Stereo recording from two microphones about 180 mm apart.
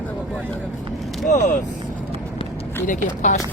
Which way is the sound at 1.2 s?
45° left (ahead or behind).